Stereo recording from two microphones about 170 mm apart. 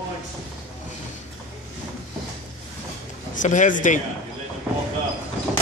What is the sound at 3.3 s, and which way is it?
Speech, 45° left (ahead or behind).